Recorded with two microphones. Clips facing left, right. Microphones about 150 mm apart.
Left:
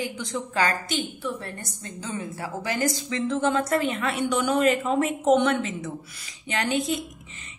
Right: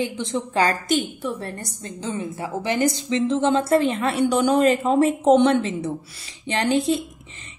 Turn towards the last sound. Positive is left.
turn(degrees=-30)  # may be behind; listen again after turning